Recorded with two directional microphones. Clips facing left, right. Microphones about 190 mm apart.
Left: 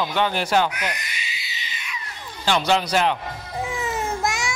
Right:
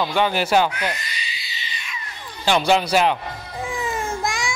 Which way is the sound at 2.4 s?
15° right (ahead or behind).